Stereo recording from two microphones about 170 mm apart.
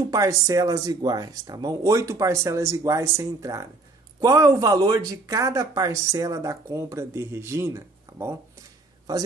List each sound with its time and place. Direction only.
0.1 s speech: 20° right (ahead or behind)